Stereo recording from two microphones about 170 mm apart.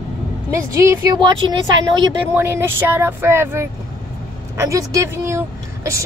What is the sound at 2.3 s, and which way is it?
Speech, 15° right (ahead or behind).